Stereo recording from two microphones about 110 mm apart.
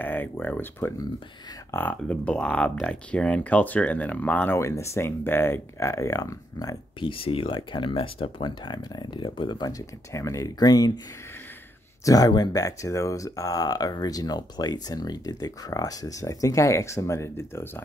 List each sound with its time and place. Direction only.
0.0 s speech: 15° left (ahead or behind)
4.6 s speech: 25° left (ahead or behind)
7.0 s speech: 55° left (ahead or behind); by 10.9 s 35° left (ahead or behind)
12.0 s speech: 35° left (ahead or behind)